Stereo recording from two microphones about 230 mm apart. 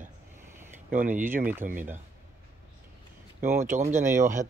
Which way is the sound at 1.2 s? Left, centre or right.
Centre.